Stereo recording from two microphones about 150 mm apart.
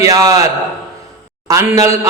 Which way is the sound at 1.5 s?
20° right (ahead or behind).